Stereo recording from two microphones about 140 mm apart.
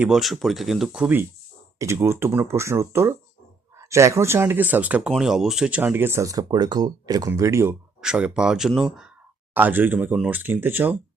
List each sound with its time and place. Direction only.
0.0 s speech: 5° right (ahead or behind); by 7.8 s 20° right (ahead or behind)
8.0 s speech: 10° right (ahead or behind)
9.6 s speech: 15° right (ahead or behind)